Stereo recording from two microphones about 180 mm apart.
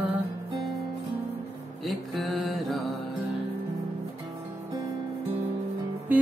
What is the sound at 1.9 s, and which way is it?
Mantra, centre (ahead or behind).